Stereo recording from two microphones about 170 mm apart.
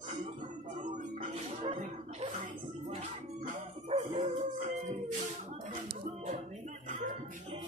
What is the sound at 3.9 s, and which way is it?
Dog, 40° right (ahead or behind).